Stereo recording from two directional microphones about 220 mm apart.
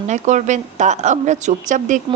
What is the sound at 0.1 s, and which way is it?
A woman's voice, 35° right (ahead or behind).